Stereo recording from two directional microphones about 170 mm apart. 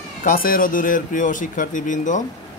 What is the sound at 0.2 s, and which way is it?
Speech, 55° left (ahead or behind).